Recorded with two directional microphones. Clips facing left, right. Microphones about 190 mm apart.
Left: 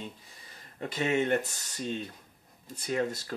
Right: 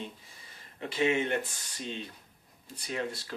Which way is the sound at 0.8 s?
40° left (ahead or behind).